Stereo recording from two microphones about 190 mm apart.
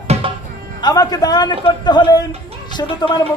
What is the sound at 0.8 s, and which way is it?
Speech, 20° left (ahead or behind).